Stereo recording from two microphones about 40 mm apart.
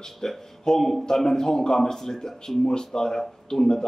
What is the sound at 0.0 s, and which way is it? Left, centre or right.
Speech, centre.